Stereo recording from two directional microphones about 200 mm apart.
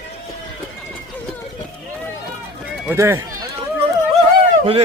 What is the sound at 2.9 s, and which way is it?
Speech, 15° right (ahead or behind).